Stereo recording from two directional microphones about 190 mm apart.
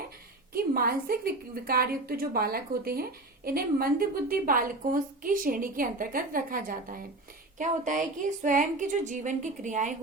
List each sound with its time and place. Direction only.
0.5 s a woman's voice: 50° right (ahead or behind)